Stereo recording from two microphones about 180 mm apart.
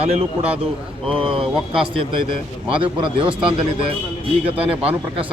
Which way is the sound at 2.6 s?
30° right (ahead or behind).